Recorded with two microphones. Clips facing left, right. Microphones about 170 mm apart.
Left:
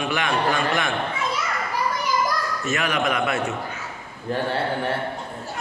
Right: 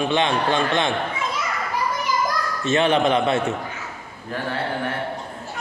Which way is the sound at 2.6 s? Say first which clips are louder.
Right 8 dB; 30° right (ahead or behind).